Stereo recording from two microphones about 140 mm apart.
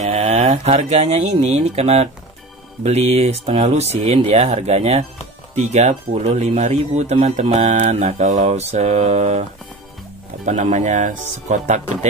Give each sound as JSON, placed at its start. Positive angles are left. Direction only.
{"t": 0.0, "sound": "speech", "side_deg": -50}